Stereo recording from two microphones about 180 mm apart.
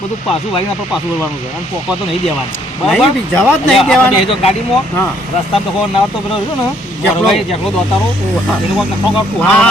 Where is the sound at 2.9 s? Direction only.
5° left (ahead or behind).